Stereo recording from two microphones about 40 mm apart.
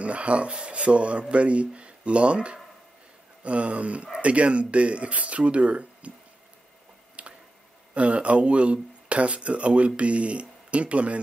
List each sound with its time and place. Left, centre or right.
0.0 s speech: right
7.2 s a sound: right
7.9 s speech: right